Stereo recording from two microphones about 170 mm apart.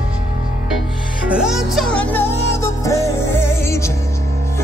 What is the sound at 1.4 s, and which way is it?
Music, centre (ahead or behind).